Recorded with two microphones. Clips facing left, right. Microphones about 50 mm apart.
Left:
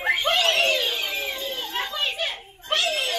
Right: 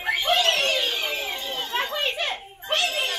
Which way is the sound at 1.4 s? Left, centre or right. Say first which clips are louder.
Right 2 dB; right.